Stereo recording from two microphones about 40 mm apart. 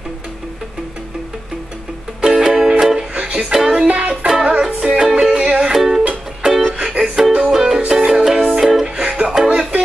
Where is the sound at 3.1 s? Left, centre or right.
Right.